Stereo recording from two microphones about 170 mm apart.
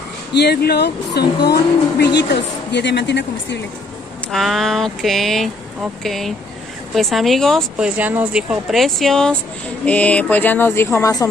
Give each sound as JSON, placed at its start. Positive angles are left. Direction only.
{"t": 0.3, "sound": "speech", "side_deg": 75}
{"t": 4.3, "sound": "speech", "side_deg": 0}
{"t": 8.0, "sound": "speech", "side_deg": -10}